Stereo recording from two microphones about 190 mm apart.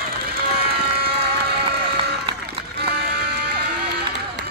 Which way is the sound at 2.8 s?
55° right (ahead or behind).